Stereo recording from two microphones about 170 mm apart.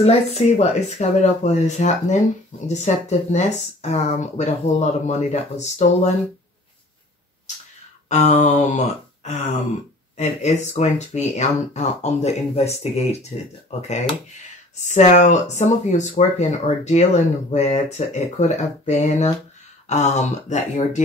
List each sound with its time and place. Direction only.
0.0 s speech: 40° left (ahead or behind)
8.1 s a sound: 40° left (ahead or behind)
10.1 s speech: 45° left (ahead or behind)